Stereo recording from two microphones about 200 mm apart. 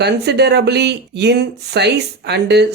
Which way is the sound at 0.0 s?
55° right (ahead or behind).